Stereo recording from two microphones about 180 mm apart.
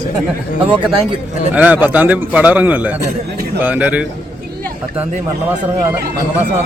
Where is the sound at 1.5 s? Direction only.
10° right (ahead or behind).